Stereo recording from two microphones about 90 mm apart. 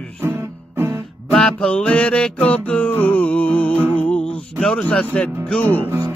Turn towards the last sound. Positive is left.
turn(degrees=-25)  # may be behind; listen again after turning